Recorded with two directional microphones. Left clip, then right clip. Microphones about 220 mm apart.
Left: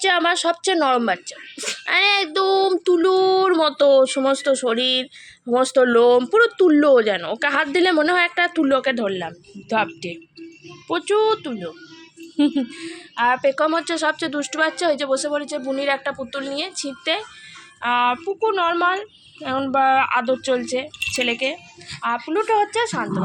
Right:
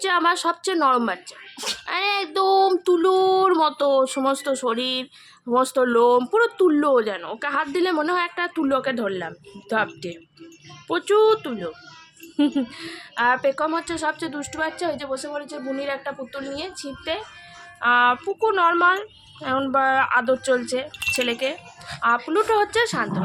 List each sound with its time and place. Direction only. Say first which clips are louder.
0.0 s speech: left 2 dB; 5° left (ahead or behind)
13.5 s speech: left 4 dB; 10° left (ahead or behind)
17.7 s speech: right 2 dB; 5° right (ahead or behind)